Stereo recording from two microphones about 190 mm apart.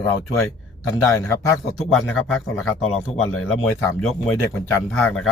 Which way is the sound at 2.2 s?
5° left (ahead or behind).